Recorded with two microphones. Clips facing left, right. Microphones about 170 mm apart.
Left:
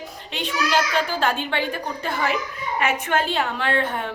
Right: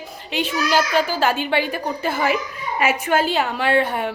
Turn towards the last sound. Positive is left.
turn(degrees=-10)  # may be behind; listen again after turning